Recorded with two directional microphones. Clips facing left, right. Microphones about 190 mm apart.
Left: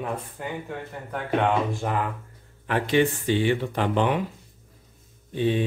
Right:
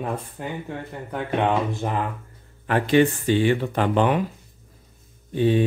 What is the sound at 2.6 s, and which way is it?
Speech, 45° right (ahead or behind).